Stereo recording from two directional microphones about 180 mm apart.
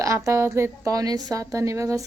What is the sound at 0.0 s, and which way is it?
Speech, 15° right (ahead or behind).